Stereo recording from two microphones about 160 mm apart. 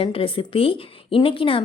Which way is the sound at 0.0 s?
35° left (ahead or behind).